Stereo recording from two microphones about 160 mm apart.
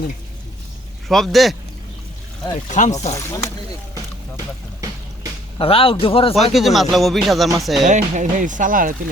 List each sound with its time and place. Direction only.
1.0 s speech: centre (ahead or behind)
2.6 s speech: 50° left (ahead or behind)
3.2 s speech: 20° left (ahead or behind)
5.5 s speech: 35° left (ahead or behind)
6.3 s speech: centre (ahead or behind)
7.9 s speech: 50° right (ahead or behind)